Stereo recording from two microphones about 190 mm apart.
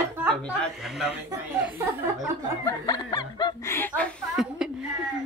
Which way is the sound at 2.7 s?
20° left (ahead or behind).